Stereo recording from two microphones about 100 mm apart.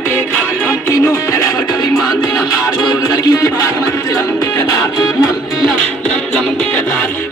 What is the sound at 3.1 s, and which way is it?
Music, 35° left (ahead or behind).